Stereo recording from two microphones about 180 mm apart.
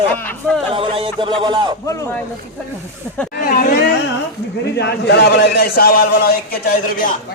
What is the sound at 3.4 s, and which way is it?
Chatter, 45° left (ahead or behind).